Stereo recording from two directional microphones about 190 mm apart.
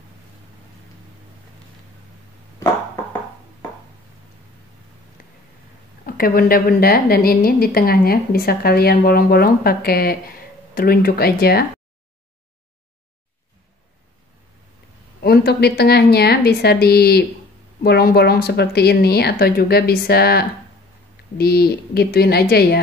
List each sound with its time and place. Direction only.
6.0 s a woman's voice: 50° left (ahead or behind)
15.2 s speech: 55° left (ahead or behind)